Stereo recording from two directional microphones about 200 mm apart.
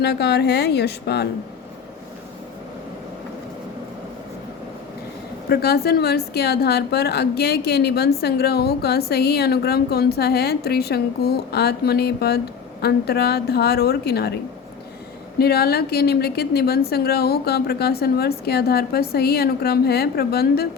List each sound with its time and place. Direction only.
0.0 s a woman's voice: 55° left (ahead or behind)
5.5 s a woman's voice: 50° left (ahead or behind)
15.4 s a woman's voice: 50° left (ahead or behind)